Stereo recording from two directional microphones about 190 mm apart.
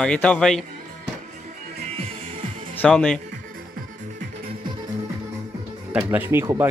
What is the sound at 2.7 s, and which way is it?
Speech, 10° left (ahead or behind).